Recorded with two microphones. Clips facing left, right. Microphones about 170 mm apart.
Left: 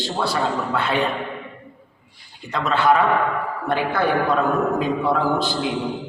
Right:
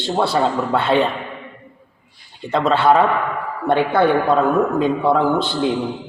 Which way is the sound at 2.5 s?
30° right (ahead or behind).